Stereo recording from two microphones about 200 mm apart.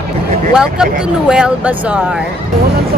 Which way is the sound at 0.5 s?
5° right (ahead or behind).